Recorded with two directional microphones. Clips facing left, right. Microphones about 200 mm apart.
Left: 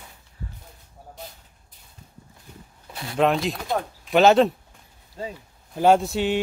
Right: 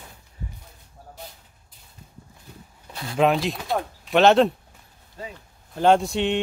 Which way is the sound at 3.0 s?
Centre (ahead or behind).